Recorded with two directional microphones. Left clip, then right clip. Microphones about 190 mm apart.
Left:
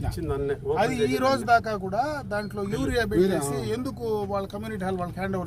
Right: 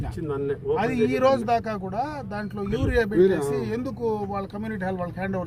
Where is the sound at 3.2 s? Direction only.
60° left (ahead or behind).